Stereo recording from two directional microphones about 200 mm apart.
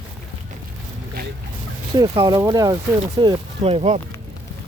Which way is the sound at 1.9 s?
25° right (ahead or behind).